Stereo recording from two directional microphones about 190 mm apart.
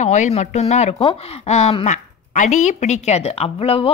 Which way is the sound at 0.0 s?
35° left (ahead or behind).